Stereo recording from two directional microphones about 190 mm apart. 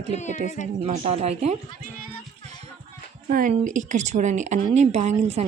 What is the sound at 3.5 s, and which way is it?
A woman's voice, 40° right (ahead or behind).